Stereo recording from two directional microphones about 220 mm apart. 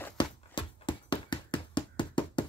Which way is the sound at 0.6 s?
20° left (ahead or behind).